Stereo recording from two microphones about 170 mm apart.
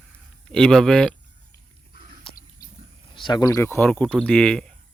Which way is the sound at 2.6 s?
60° left (ahead or behind).